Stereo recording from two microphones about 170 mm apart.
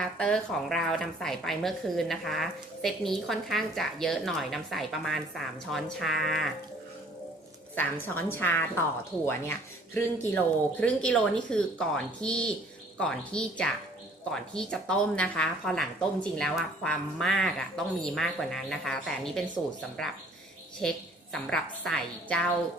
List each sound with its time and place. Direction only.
0.0 s speech: 5° left (ahead or behind)
7.7 s a woman's voice: 10° left (ahead or behind)
20.8 s speech: 5° left (ahead or behind)